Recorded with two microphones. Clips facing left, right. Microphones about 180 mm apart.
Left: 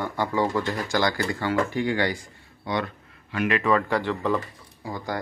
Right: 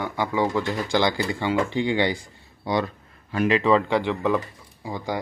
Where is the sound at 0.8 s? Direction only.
30° right (ahead or behind).